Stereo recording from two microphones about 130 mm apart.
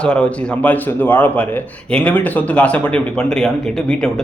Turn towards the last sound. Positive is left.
turn(degrees=5)  # may be behind; listen again after turning